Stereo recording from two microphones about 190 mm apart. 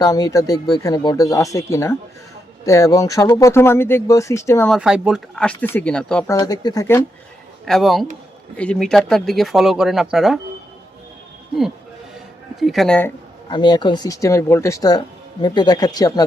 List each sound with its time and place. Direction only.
0.0 s speech: 20° left (ahead or behind)
4.7 s speech: 5° right (ahead or behind)
6.2 s speech: 20° left (ahead or behind)
7.6 s speech: centre (ahead or behind)
12.5 s speech: centre (ahead or behind)
13.5 s speech: 25° left (ahead or behind)